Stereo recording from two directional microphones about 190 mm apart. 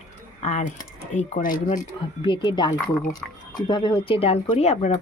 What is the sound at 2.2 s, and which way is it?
Speech, 25° left (ahead or behind).